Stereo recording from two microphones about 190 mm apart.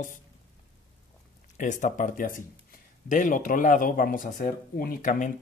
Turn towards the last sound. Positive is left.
turn(degrees=45)  # may be behind; listen again after turning